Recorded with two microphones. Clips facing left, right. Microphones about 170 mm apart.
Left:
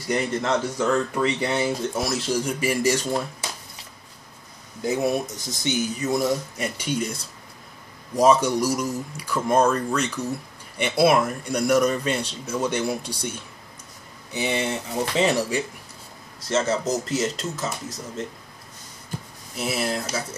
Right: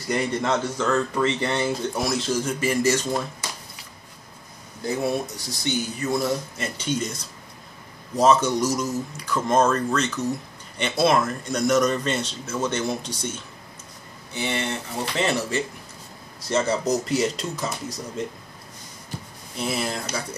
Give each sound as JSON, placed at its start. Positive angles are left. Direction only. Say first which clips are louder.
{"t": 0.1, "sound": "speech", "louder": "even", "side_deg": 0}
{"t": 0.7, "sound": "speech", "louder": "even", "side_deg": 10}
{"t": 4.8, "sound": "speech", "louder": "left 2 dB", "side_deg": 20}
{"t": 8.2, "sound": "speech", "louder": "left 1 dB", "side_deg": 10}
{"t": 16.4, "sound": "speech", "louder": "right 1 dB", "side_deg": 0}
{"t": 19.5, "sound": "speech", "louder": "left 1 dB", "side_deg": 5}